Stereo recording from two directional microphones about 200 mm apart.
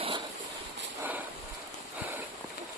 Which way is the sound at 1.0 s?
10° right (ahead or behind).